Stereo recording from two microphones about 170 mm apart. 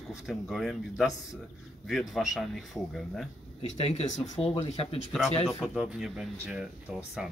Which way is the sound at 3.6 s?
35° left (ahead or behind).